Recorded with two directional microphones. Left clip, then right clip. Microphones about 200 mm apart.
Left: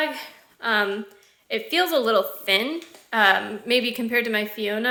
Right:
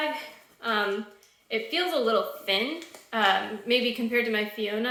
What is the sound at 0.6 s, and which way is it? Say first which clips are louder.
A woman's voice: left 4 dB; 45° left (ahead or behind).